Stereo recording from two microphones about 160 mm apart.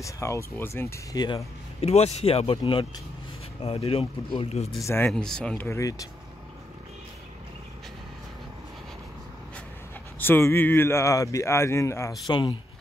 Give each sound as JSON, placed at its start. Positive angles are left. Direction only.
{"t": 0.0, "sound": "speech", "side_deg": 20}
{"t": 1.2, "sound": "speech", "side_deg": 35}
{"t": 4.8, "sound": "speech", "side_deg": 15}
{"t": 5.1, "sound": "speech", "side_deg": 5}
{"t": 5.7, "sound": "speech", "side_deg": 20}
{"t": 10.1, "sound": "speech", "side_deg": 15}